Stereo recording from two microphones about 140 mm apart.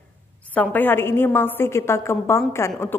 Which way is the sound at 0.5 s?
10° left (ahead or behind).